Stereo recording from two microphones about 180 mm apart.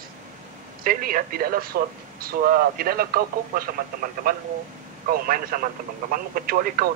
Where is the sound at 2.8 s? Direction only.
55° right (ahead or behind).